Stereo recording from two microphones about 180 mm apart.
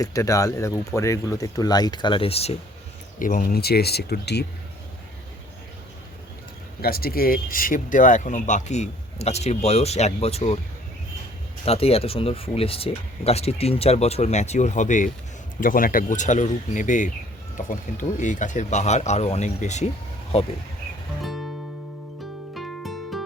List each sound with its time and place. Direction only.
0.0 s speech: 20° left (ahead or behind); by 2.6 s 35° left (ahead or behind)
3.2 s speech: 50° left (ahead or behind); by 4.4 s 65° left (ahead or behind)
6.8 s speech: 55° left (ahead or behind); by 10.6 s 35° left (ahead or behind)
11.6 s speech: 35° left (ahead or behind)
21.2 s music: centre (ahead or behind)
22.5 s music: centre (ahead or behind)